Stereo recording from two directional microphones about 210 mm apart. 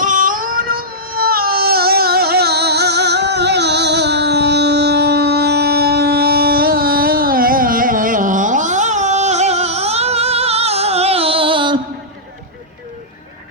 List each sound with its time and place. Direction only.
0.0 s baby cry: 40° right (ahead or behind); by 11.8 s 25° right (ahead or behind)